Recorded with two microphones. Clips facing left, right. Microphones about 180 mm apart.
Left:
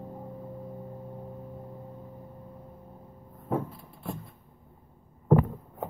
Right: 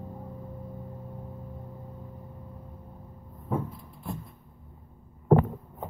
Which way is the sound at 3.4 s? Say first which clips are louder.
Left 1 dB; 55° left (ahead or behind).